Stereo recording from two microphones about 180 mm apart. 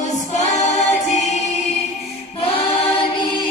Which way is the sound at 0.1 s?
40° left (ahead or behind).